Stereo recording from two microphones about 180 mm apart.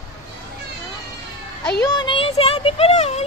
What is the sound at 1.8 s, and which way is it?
Speech, 25° left (ahead or behind).